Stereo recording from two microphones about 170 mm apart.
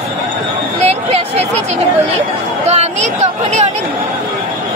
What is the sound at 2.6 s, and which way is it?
Speech, 40° right (ahead or behind).